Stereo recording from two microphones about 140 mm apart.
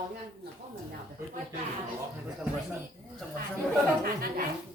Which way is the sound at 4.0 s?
90° right.